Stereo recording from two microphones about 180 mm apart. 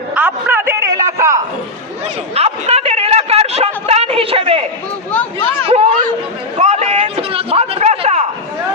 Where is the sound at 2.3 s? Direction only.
35° right (ahead or behind).